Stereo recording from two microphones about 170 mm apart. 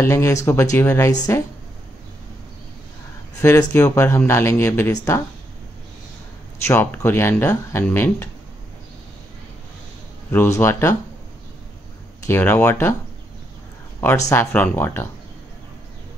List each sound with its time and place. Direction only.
0.0 s speech: 15° left (ahead or behind)
3.3 s speech: 15° left (ahead or behind)
6.6 s speech: 15° left (ahead or behind)
10.3 s speech: 15° left (ahead or behind)
12.3 s speech: 10° left (ahead or behind)
14.0 s speech: 15° left (ahead or behind)